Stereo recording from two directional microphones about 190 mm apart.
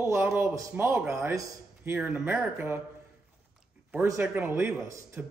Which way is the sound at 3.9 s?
10° right (ahead or behind).